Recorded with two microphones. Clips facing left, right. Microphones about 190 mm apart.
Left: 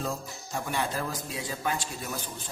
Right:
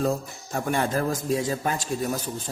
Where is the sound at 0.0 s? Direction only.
55° right (ahead or behind).